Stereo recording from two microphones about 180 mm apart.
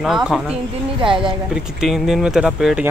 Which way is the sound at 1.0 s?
25° right (ahead or behind).